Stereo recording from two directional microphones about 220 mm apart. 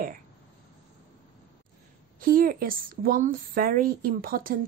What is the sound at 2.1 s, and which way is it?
A woman's voice, 40° right (ahead or behind).